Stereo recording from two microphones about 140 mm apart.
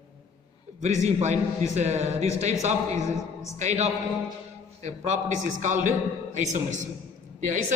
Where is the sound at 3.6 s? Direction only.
55° right (ahead or behind).